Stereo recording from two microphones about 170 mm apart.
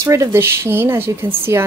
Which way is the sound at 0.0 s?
15° right (ahead or behind).